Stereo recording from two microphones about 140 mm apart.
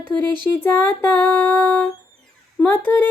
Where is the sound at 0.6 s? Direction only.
15° left (ahead or behind).